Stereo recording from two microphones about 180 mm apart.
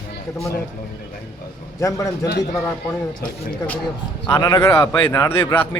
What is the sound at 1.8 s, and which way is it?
Speech, 15° left (ahead or behind).